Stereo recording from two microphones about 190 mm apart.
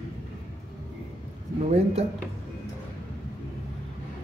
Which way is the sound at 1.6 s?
35° right (ahead or behind).